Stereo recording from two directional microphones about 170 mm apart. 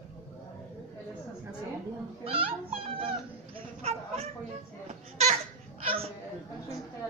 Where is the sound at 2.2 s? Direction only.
30° right (ahead or behind).